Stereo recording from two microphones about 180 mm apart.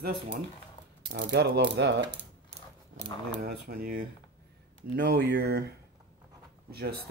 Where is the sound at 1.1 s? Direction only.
75° right (ahead or behind).